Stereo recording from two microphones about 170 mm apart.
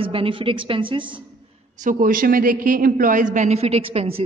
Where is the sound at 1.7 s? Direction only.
50° right (ahead or behind).